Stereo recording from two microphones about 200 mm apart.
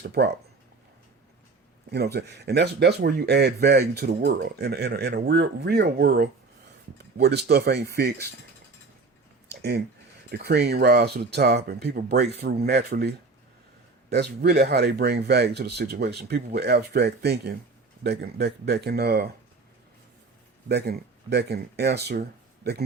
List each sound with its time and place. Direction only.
0.0 s speech: 55° right (ahead or behind)
1.9 s speech: 55° right (ahead or behind)
9.6 s speech: 50° right (ahead or behind)
20.7 s speech: 55° right (ahead or behind)